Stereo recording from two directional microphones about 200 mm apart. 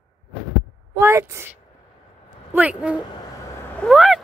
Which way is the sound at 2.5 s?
5° right (ahead or behind).